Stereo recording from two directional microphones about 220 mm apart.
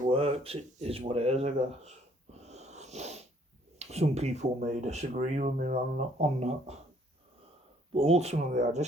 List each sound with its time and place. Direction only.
0.0 s speech: 30° right (ahead or behind)
2.3 s wheeze: 30° right (ahead or behind)
3.8 s speech: 30° right (ahead or behind)
7.9 s speech: 30° right (ahead or behind)